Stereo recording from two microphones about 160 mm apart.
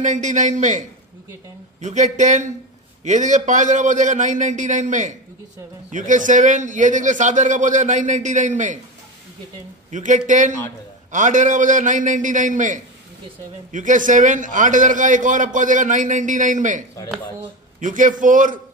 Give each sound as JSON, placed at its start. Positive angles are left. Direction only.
{"t": 0.0, "sound": "a man's voice", "side_deg": -50}
{"t": 9.8, "sound": "a man's voice", "side_deg": -50}